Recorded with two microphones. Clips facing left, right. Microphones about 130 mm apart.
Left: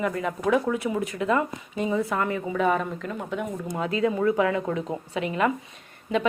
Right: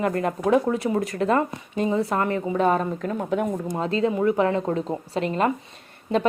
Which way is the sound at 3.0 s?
45° right (ahead or behind).